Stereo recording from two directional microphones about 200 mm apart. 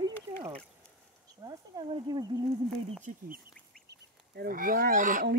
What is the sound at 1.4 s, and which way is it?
Speech, 20° right (ahead or behind).